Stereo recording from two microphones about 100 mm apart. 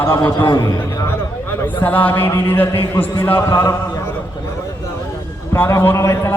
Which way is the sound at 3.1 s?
25° left (ahead or behind).